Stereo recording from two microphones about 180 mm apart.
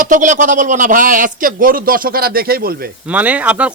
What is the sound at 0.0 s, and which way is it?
A man's voice, 45° right (ahead or behind).